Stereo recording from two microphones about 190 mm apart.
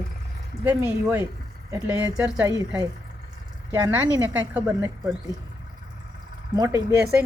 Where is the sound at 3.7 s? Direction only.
20° right (ahead or behind).